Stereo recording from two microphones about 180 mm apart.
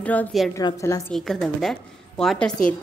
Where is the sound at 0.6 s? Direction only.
20° left (ahead or behind).